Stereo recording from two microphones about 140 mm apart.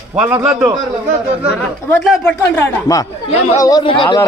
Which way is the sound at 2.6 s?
25° left (ahead or behind).